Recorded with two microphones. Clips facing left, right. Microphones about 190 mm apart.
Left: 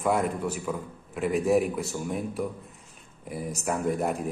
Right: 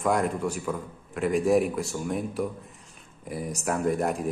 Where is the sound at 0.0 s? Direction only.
5° left (ahead or behind).